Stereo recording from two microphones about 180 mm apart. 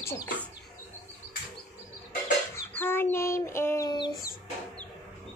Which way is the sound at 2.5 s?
10° left (ahead or behind).